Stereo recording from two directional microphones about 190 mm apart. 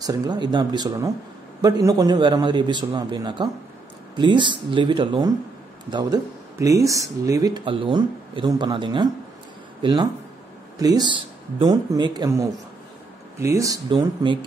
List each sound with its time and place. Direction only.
0.0 s speech: 20° right (ahead or behind)